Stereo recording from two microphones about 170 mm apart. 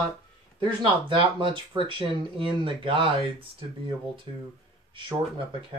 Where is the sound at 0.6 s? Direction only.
30° right (ahead or behind).